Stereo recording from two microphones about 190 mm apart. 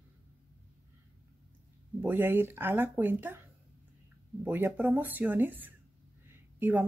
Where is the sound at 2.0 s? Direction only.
10° right (ahead or behind).